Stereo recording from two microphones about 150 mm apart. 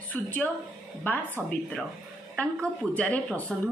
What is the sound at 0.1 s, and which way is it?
A woman's voice, 10° left (ahead or behind).